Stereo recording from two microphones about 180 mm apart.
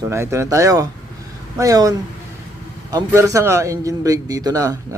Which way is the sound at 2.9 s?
15° right (ahead or behind).